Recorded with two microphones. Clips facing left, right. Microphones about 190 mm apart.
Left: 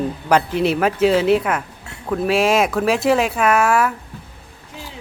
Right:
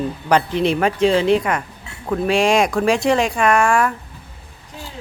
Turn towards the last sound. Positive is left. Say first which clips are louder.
# even
turn(degrees=5)  # may be behind; listen again after turning